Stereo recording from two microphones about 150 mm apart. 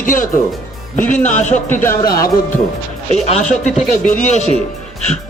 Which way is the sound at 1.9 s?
85° left.